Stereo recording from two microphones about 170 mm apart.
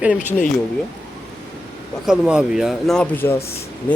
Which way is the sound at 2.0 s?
5° right (ahead or behind).